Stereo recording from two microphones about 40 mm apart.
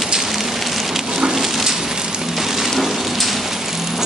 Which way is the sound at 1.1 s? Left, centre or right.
Centre.